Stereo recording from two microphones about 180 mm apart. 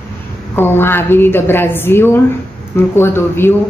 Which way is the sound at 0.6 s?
10° left (ahead or behind).